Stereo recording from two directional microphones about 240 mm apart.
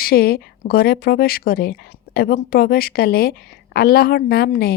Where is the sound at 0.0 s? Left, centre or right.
Left.